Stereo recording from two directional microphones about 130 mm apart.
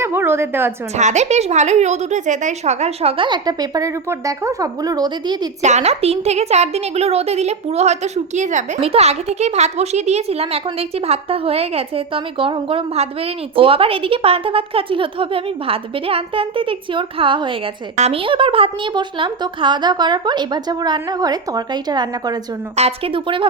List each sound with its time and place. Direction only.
0.0 s a sound: 15° right (ahead or behind)
0.9 s a woman's voice: 65° right (ahead or behind); by 5.5 s 35° right (ahead or behind)
5.6 s a woman's voice: 60° right (ahead or behind)
8.8 s speech: 50° right (ahead or behind)
17.9 s a woman's voice: 60° right (ahead or behind)
18.2 s a woman's voice: 40° right (ahead or behind)
22.7 s speech: 50° right (ahead or behind)